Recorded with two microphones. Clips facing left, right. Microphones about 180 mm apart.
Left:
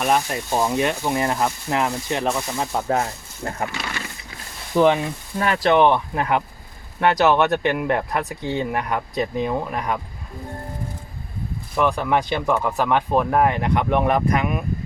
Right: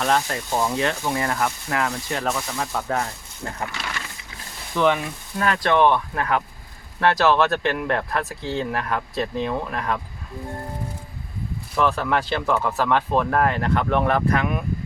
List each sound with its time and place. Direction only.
0.0 s speech: 15° left (ahead or behind); by 3.6 s 30° left (ahead or behind)
4.7 s speech: 35° left (ahead or behind); by 10.0 s 15° left (ahead or behind)
11.8 s speech: 15° left (ahead or behind)